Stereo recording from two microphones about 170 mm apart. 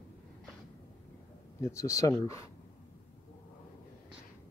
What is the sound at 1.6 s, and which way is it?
Speech, 20° left (ahead or behind).